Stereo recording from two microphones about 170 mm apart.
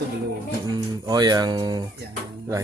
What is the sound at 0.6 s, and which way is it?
Speech, 25° right (ahead or behind).